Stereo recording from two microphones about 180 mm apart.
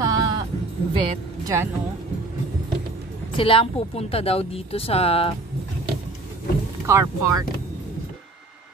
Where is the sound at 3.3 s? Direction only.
30° left (ahead or behind).